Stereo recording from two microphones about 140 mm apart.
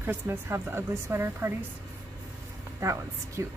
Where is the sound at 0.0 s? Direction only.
15° right (ahead or behind).